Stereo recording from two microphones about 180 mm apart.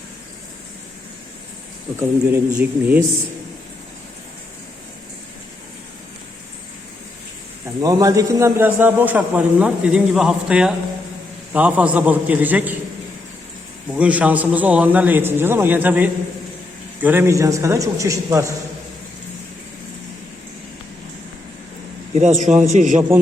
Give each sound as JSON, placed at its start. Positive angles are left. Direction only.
{"t": 2.0, "sound": "a man's voice", "side_deg": -10}
{"t": 7.8, "sound": "a man's voice", "side_deg": -20}
{"t": 13.9, "sound": "a man's voice", "side_deg": -10}
{"t": 22.1, "sound": "a man's voice", "side_deg": -40}